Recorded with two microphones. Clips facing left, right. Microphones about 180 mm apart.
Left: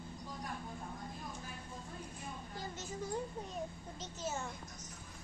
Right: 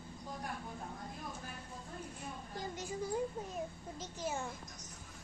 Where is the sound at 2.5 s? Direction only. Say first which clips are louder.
Right 5 dB; 15° right (ahead or behind).